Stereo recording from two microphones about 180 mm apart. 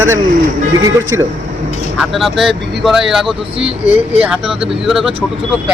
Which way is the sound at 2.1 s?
Centre (ahead or behind).